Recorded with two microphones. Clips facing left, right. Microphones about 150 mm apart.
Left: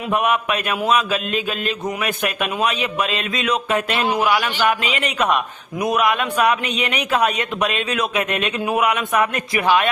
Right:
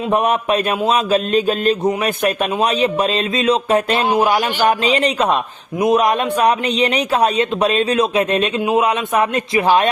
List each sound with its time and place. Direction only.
0.1 s speech: 35° right (ahead or behind)
4.0 s a man's voice: 25° right (ahead or behind)
4.3 s a man's voice: 40° right (ahead or behind)